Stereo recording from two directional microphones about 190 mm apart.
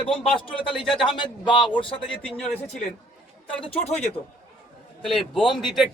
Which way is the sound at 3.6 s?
30° left (ahead or behind).